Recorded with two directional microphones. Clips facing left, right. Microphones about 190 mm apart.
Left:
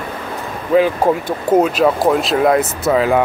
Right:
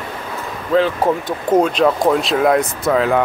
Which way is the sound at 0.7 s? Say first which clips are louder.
Left 2 dB; 10° left (ahead or behind).